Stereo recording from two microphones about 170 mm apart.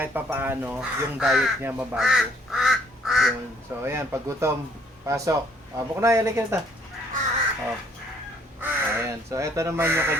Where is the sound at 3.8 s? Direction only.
15° right (ahead or behind).